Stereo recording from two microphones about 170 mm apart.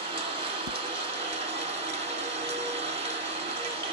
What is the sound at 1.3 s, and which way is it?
Ratchet, 35° right (ahead or behind).